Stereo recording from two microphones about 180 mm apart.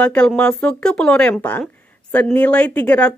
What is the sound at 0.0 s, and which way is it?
Speech, 5° left (ahead or behind).